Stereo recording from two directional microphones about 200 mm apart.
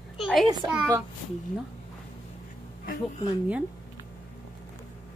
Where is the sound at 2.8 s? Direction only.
45° left (ahead or behind).